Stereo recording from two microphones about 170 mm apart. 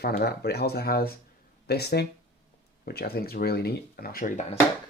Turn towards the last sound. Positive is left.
turn(degrees=45)  # may be behind; listen again after turning